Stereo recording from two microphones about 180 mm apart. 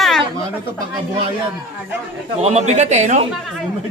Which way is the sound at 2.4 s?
35° right (ahead or behind).